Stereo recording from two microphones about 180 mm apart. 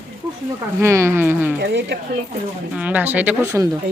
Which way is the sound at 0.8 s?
15° right (ahead or behind).